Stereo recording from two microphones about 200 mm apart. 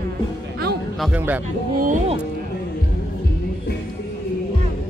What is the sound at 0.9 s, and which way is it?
Speech, 5° right (ahead or behind).